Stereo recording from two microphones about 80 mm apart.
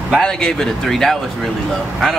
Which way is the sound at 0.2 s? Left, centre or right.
Centre.